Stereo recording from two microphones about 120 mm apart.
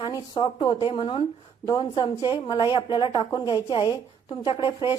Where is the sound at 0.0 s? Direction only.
40° left (ahead or behind).